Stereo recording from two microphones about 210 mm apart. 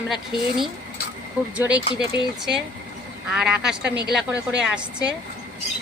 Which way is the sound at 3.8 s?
50° right (ahead or behind).